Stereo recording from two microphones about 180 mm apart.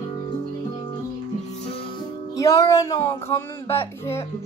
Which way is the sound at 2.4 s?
20° left (ahead or behind).